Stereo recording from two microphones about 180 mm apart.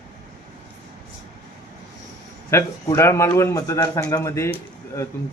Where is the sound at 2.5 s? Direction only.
15° left (ahead or behind).